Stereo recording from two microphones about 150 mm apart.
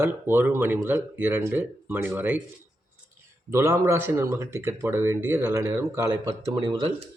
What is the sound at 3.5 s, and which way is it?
Speech, 20° right (ahead or behind).